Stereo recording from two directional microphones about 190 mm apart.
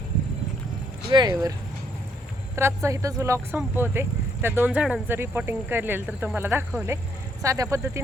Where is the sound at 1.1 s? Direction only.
20° right (ahead or behind).